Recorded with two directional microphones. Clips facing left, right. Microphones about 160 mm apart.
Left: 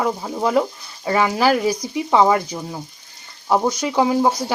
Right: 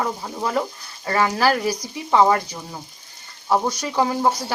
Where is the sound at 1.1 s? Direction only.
15° left (ahead or behind).